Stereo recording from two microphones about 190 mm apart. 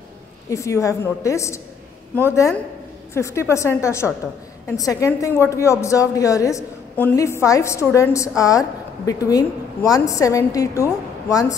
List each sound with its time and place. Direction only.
0.5 s a woman's voice: 15° left (ahead or behind)